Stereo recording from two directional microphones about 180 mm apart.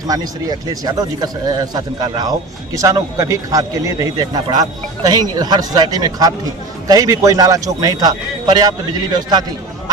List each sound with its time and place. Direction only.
0.1 s a man's voice: 20° right (ahead or behind)